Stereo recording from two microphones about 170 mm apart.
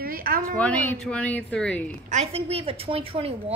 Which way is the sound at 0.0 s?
60° right (ahead or behind).